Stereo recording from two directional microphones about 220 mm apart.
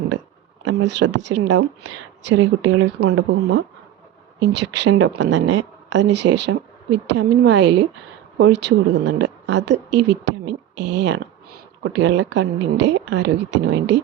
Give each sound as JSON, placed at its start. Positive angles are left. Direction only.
{"t": 0.8, "sound": "a woman's voice", "side_deg": -55}